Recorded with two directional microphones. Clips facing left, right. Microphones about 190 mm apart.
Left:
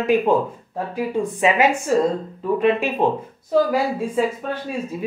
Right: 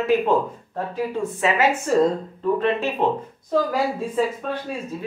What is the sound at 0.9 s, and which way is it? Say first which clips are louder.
Speech: left 3 dB; 15° left (ahead or behind).